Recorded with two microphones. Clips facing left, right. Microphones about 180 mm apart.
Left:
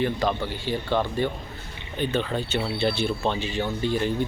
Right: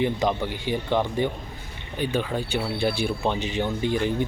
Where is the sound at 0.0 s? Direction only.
15° right (ahead or behind).